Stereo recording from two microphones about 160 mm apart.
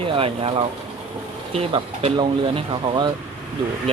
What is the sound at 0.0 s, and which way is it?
Speech, 35° right (ahead or behind).